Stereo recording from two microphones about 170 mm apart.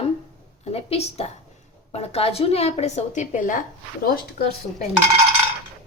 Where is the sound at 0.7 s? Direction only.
35° left (ahead or behind).